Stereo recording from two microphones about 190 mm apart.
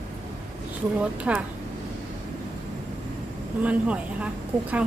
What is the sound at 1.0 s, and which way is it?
Speech, 5° right (ahead or behind).